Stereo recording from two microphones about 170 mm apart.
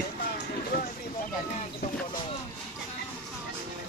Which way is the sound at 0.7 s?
60° left (ahead or behind).